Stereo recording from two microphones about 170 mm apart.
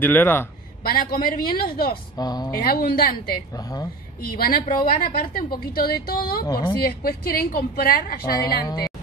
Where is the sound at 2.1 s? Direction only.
25° left (ahead or behind).